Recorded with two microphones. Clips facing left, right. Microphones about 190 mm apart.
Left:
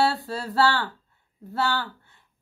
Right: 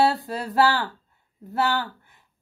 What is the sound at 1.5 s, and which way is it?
Speech, 15° right (ahead or behind).